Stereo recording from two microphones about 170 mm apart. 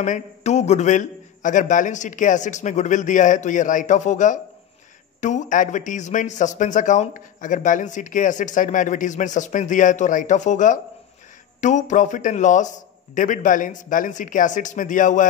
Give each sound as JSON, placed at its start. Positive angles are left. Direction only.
{"t": 0.0, "sound": "a man's voice", "side_deg": 45}